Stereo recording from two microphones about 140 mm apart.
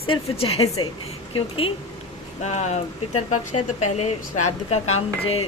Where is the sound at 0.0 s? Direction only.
45° left (ahead or behind).